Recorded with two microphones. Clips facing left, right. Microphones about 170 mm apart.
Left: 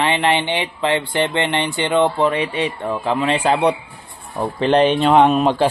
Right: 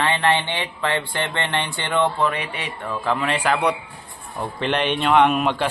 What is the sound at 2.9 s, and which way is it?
A man's voice, 20° left (ahead or behind).